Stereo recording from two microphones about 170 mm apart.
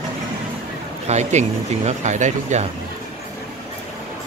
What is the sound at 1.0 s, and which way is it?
Speech, 40° right (ahead or behind).